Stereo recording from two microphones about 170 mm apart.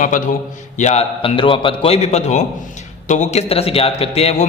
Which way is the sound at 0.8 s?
40° left (ahead or behind).